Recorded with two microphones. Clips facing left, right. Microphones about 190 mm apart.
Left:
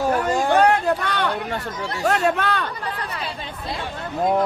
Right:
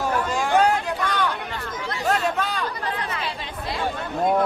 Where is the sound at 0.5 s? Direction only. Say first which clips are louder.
Left 2 dB; 65° left (ahead or behind).